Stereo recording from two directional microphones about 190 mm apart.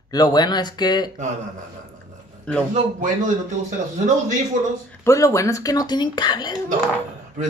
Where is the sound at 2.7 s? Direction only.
40° right (ahead or behind).